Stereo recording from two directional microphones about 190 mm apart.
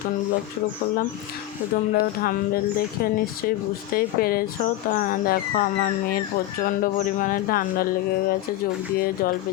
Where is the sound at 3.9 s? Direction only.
50° left (ahead or behind).